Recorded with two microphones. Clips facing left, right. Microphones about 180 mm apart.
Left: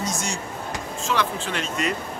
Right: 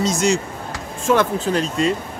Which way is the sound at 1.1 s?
50° right (ahead or behind).